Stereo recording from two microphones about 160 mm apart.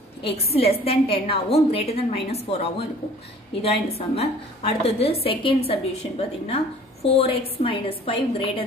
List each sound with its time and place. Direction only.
0.6 s a woman's voice: 40° left (ahead or behind)